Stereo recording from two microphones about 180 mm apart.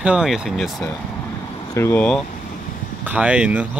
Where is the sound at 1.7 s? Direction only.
15° left (ahead or behind).